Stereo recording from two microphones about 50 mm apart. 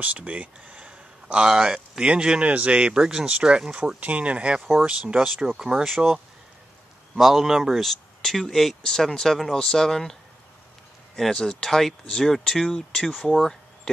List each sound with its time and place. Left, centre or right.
0.0 s speech: right
0.8 s a man's voice: centre
4.6 s speech: centre
4.8 s speech: right
5.4 s speech: centre
6.0 s speech: centre
7.2 s speech: centre
11.1 s speech: centre